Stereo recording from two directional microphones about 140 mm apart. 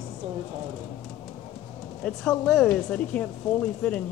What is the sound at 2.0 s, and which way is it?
A woman's voice, 5° left (ahead or behind).